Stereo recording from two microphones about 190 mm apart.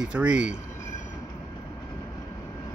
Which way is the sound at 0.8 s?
40° left (ahead or behind).